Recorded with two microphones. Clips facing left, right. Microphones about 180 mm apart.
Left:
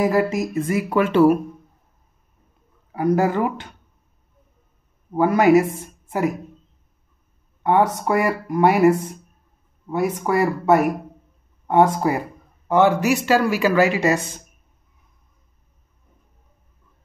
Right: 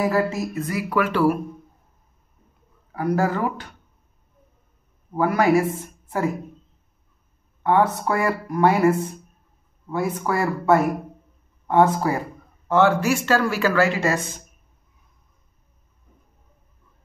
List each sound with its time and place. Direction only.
0.0 s speech: 20° left (ahead or behind)
2.9 s speech: 20° left (ahead or behind)
5.1 s speech: 25° left (ahead or behind)
8.1 s speech: 15° left (ahead or behind)